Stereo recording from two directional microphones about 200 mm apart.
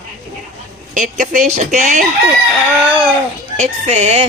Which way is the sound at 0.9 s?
40° right (ahead or behind).